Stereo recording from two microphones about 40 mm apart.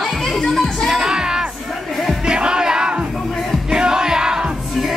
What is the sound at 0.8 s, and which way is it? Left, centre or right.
Music, centre.